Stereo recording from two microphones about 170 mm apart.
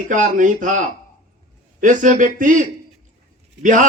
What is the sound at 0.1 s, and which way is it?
A man's voice, 50° right (ahead or behind).